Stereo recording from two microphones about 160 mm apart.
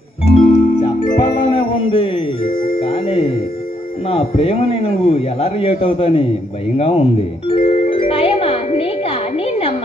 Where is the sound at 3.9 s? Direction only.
35° left (ahead or behind).